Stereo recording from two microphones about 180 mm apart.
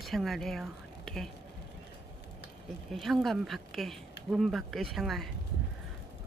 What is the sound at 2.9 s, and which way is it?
Speech, centre (ahead or behind).